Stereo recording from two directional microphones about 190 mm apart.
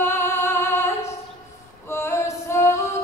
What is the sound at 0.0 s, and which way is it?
Music, 15° left (ahead or behind).